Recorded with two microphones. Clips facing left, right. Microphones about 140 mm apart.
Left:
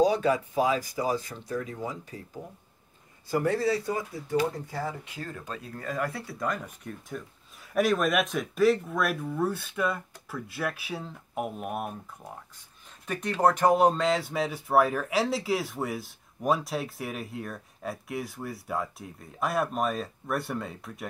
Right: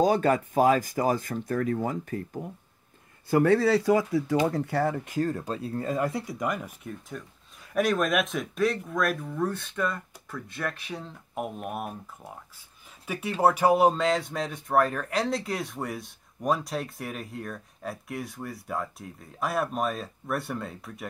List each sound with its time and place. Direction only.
0.0 s speech: 50° right (ahead or behind)
3.3 s speech: 65° right (ahead or behind); by 4.4 s 90° right
4.5 s speech: 75° right (ahead or behind)
5.0 s speech: 45° right (ahead or behind); by 21.1 s centre (ahead or behind)